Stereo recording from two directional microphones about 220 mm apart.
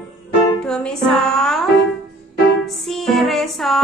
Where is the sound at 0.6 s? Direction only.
5° left (ahead or behind).